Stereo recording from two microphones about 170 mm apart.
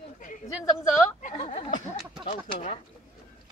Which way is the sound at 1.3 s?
30° left (ahead or behind).